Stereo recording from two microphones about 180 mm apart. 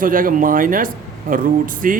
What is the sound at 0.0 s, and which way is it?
Speech, 50° right (ahead or behind).